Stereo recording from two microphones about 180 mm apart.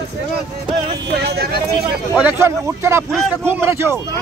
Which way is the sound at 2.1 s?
15° right (ahead or behind).